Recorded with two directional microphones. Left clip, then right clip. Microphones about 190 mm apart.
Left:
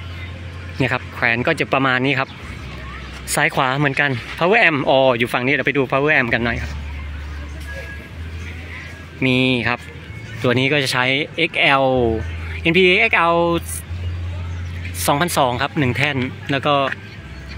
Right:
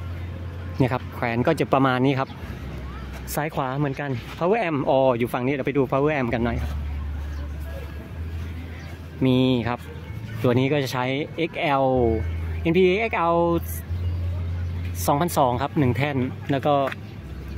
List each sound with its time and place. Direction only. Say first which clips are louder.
0.7 s speech: left 5 dB; 15° right (ahead or behind)
3.4 s speech: left 10 dB; 5° left (ahead or behind)
9.2 s speech: left 5 dB; 10° right (ahead or behind)
15.0 s speech: left 4 dB; 10° right (ahead or behind)